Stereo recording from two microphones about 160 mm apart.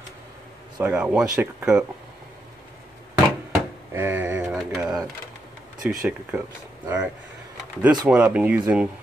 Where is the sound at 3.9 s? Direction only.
15° right (ahead or behind).